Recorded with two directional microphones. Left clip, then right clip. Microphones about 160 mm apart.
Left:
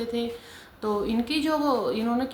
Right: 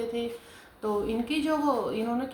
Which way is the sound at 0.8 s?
45° left (ahead or behind).